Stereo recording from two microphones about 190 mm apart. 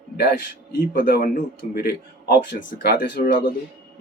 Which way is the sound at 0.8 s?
50° left (ahead or behind).